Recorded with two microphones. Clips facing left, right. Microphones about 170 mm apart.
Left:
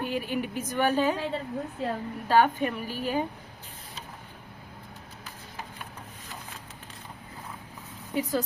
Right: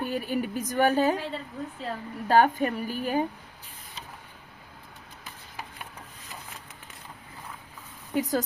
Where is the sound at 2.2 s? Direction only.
45° right (ahead or behind).